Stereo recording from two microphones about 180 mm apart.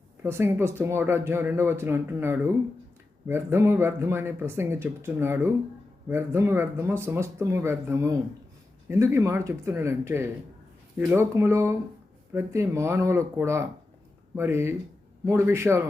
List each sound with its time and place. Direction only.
0.2 s speech: 15° right (ahead or behind)